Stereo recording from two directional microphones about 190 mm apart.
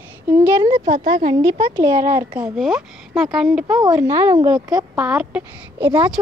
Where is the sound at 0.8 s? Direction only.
50° right (ahead or behind).